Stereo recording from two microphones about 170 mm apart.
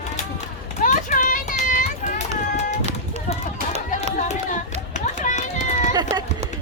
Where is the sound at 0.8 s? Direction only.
50° left (ahead or behind).